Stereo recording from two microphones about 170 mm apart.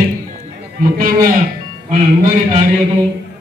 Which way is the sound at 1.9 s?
50° right (ahead or behind).